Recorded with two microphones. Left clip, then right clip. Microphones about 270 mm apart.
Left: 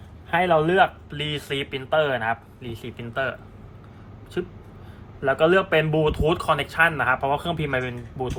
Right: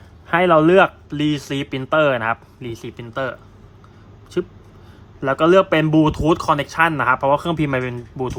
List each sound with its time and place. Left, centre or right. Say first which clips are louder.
0.3 s speech: right 6 dB; right
5.2 s speech: right 5 dB; right